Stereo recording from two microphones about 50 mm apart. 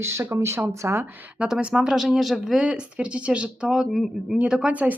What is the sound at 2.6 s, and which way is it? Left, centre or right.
Speech, right.